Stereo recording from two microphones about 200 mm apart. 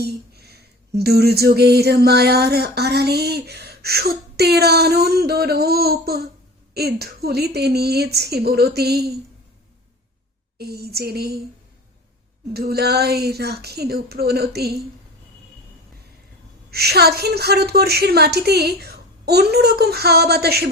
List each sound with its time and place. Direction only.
0.0 s speech: 55° right (ahead or behind)
10.6 s speech: 55° right (ahead or behind)
12.5 s speech: 50° right (ahead or behind)
16.7 s speech: 55° right (ahead or behind)